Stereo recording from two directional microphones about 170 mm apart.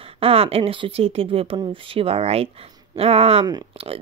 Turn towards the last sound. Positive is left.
turn(degrees=-35)  # may be behind; listen again after turning